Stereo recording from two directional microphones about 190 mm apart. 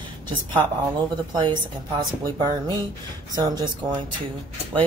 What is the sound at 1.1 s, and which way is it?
Speech, 20° right (ahead or behind).